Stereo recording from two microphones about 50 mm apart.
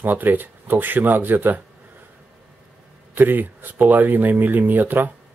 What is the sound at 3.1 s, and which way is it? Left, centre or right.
Speech, right.